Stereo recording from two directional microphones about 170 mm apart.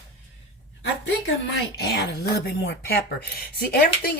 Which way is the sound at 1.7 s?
70° left (ahead or behind).